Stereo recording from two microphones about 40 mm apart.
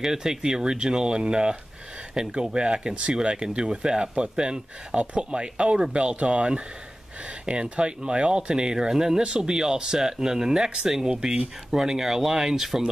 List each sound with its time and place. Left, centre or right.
0.0 s speech: centre
11.7 s speech: centre